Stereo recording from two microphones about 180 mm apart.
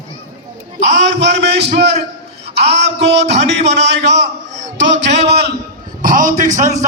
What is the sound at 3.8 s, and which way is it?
A man's voice, 75° right (ahead or behind).